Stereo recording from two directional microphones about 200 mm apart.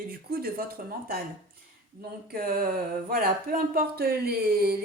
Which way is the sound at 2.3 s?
45° right (ahead or behind).